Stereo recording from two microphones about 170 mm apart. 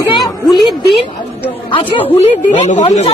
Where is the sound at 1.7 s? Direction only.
30° left (ahead or behind).